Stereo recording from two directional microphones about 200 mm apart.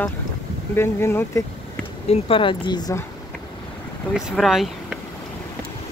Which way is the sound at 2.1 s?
25° left (ahead or behind).